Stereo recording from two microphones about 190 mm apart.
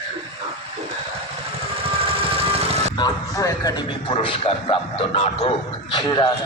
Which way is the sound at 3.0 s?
15° left (ahead or behind).